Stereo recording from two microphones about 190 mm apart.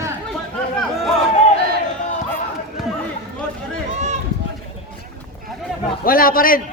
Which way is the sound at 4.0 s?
35° right (ahead or behind).